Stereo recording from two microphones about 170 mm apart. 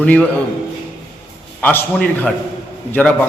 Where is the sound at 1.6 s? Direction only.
10° left (ahead or behind).